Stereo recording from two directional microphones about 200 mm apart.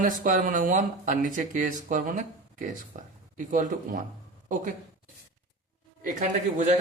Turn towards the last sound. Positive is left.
turn(degrees=-40)  # may be behind; listen again after turning